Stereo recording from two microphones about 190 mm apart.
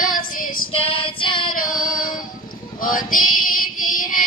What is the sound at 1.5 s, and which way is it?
Female singing, 45° left (ahead or behind).